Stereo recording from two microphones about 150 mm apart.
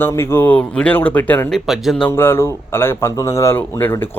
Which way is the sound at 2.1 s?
15° left (ahead or behind).